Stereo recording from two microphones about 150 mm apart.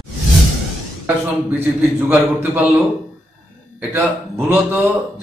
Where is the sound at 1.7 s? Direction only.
10° right (ahead or behind).